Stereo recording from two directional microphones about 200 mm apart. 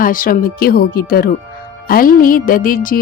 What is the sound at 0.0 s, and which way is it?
A woman's voice, 45° left (ahead or behind).